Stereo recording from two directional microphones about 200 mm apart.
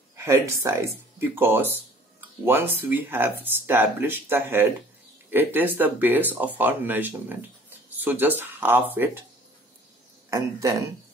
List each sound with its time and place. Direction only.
0.1 s speech: 15° right (ahead or behind)
10.3 s speech: 15° right (ahead or behind)